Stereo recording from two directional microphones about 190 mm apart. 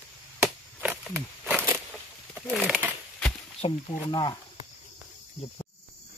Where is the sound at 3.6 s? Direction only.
25° left (ahead or behind).